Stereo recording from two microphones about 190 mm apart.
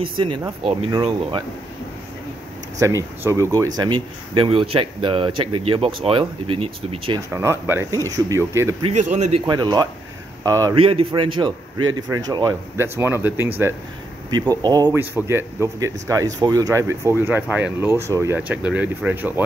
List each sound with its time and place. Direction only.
0.2 s a man's voice: 25° right (ahead or behind)
2.8 s a man's voice: 15° right (ahead or behind)
7.2 s speech: 10° right (ahead or behind)
8.9 s speech: 40° right (ahead or behind)
9.5 s a man's voice: 20° right (ahead or behind)
10.8 s a man's voice: 30° right (ahead or behind); by 19.4 s 10° right (ahead or behind)